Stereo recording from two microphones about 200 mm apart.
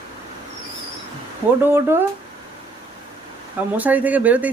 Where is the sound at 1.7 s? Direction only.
10° right (ahead or behind).